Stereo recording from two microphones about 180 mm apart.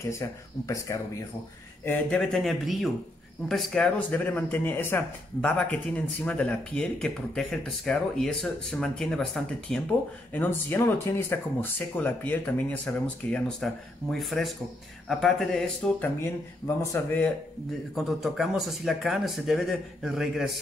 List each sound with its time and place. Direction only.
0.0 s speech: 15° left (ahead or behind)
1.9 s speech: 5° left (ahead or behind)
17.9 s speech: centre (ahead or behind)